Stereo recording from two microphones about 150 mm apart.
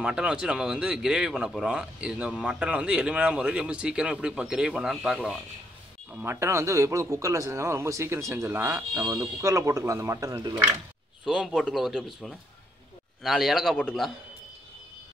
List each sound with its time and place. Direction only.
0.0 s speech: 5° right (ahead or behind)
6.1 s speech: 15° right (ahead or behind)
11.2 s speech: 5° right (ahead or behind)